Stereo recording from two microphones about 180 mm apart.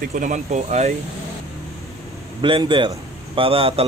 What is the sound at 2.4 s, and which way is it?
A man's voice, 25° right (ahead or behind).